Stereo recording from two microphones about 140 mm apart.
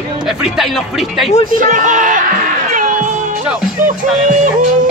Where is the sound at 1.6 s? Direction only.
65° right (ahead or behind).